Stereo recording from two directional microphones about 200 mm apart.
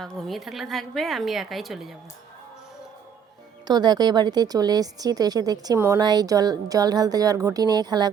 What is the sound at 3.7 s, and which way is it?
A woman's voice, 20° right (ahead or behind).